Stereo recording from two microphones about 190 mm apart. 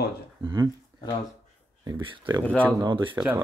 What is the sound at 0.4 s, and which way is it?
Speech, 25° right (ahead or behind).